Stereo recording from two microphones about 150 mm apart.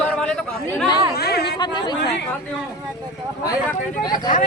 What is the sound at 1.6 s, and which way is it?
Speech, 30° left (ahead or behind).